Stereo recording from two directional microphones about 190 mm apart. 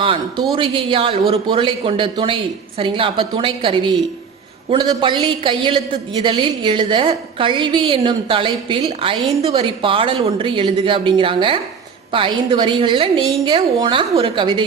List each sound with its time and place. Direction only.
0.0 s a woman's voice: 25° right (ahead or behind)